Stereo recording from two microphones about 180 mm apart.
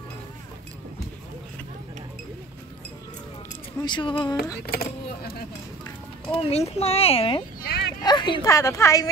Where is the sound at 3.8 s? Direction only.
25° left (ahead or behind).